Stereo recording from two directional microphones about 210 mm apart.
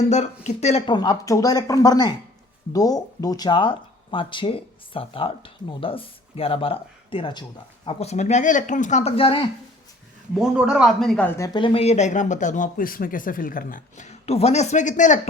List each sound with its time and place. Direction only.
0.0 s speech: 35° left (ahead or behind)
10.3 s speech: 5° right (ahead or behind); by 15.3 s 35° left (ahead or behind)